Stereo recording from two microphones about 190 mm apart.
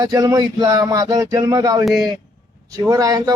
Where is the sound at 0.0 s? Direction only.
20° right (ahead or behind).